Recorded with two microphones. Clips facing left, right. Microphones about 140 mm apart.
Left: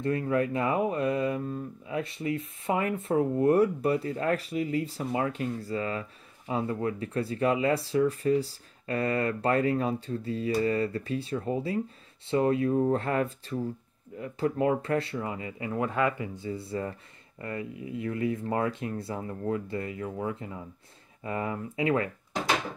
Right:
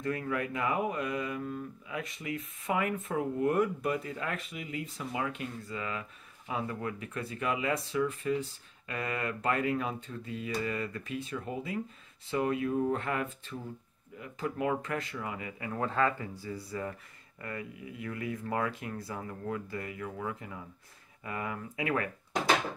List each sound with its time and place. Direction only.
0.0 s speech: 30° left (ahead or behind)
15.7 s speech: 15° left (ahead or behind)